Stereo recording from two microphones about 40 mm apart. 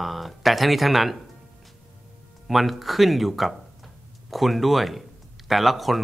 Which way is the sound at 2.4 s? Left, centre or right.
Centre.